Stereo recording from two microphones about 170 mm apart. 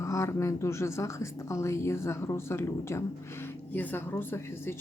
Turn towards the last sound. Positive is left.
turn(degrees=15)  # may be behind; listen again after turning